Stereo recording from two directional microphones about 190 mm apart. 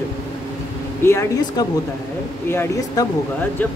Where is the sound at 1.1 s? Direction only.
15° left (ahead or behind).